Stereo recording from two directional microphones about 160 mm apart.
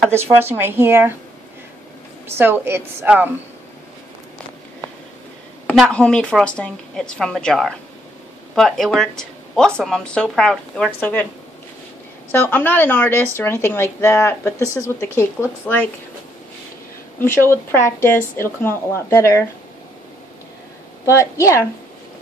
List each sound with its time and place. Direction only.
0.1 s speech: 15° right (ahead or behind)
2.3 s speech: 15° right (ahead or behind)
5.7 s speech: 5° left (ahead or behind)
12.3 s speech: 10° left (ahead or behind)
17.2 s speech: 15° left (ahead or behind)
21.0 s a woman's voice: 20° left (ahead or behind)